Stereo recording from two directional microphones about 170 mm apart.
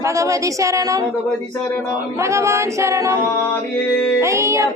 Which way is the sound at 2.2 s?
15° right (ahead or behind).